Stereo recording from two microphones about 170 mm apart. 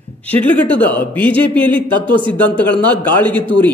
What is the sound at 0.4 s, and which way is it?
A man's voice, 10° left (ahead or behind).